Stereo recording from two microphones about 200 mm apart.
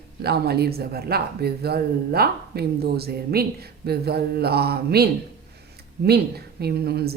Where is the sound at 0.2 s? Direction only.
50° right (ahead or behind).